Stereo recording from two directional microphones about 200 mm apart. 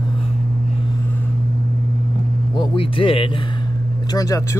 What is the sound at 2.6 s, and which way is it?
Music, 25° left (ahead or behind).